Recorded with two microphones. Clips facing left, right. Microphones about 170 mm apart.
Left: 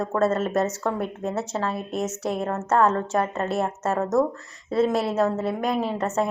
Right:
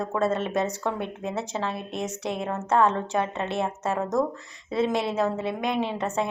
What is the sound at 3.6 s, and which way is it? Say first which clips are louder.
Speech: left 2 dB; 5° left (ahead or behind).